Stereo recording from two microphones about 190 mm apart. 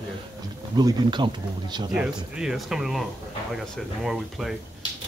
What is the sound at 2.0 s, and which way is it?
Speech, 5° right (ahead or behind).